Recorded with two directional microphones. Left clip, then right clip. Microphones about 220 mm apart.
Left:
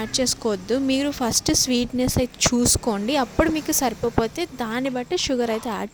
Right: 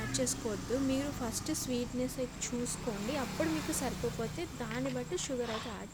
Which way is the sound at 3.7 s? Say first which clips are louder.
Left 13 dB; 40° left (ahead or behind).